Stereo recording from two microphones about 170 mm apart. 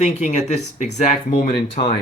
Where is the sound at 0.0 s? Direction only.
45° left (ahead or behind).